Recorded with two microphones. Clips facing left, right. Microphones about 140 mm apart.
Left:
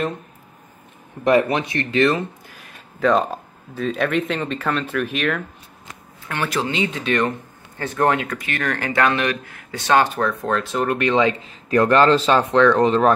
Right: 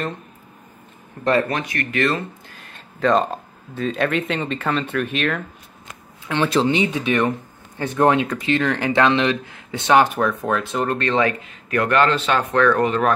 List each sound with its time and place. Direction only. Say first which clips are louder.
1.2 s speech: left 3 dB; 15° left (ahead or behind)
2.7 s speech: even; 5° left (ahead or behind)
6.2 s speech: right 5 dB; 20° right (ahead or behind); by 11.0 s centre (ahead or behind)
11.0 s speech: left 3 dB; 20° left (ahead or behind)
11.7 s a man's voice: left 4 dB; 30° left (ahead or behind)
12.5 s speech: left 2 dB; 20° left (ahead or behind)